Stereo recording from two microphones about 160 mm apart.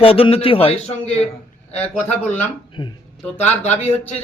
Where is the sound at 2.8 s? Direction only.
30° left (ahead or behind).